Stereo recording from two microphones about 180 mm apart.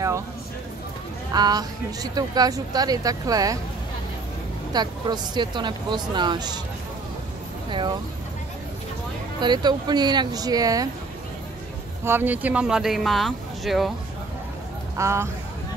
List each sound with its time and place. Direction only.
1.3 s speech: 20° right (ahead or behind)
4.7 s speech: 25° right (ahead or behind)
9.4 s speech: 25° right (ahead or behind)
12.0 s speech: 10° right (ahead or behind)
15.0 s speech: 15° right (ahead or behind)